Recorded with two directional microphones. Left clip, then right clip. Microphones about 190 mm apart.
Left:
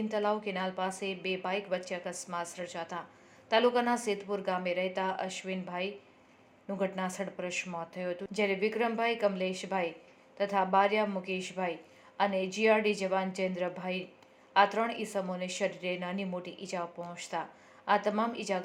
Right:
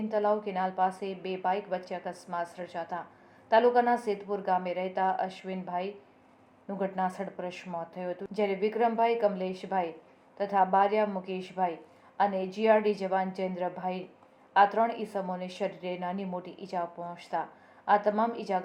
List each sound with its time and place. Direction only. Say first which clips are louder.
0.1 s speech: right 4 dB; 25° left (ahead or behind)